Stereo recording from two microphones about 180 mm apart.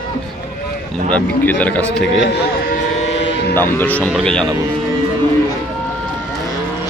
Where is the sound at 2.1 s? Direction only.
90° left.